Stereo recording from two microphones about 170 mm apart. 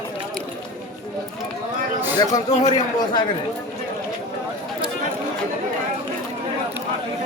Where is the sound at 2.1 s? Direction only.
20° left (ahead or behind).